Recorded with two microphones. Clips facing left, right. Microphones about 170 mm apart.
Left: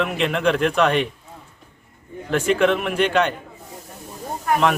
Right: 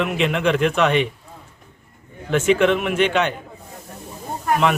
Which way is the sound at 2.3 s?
Centre (ahead or behind).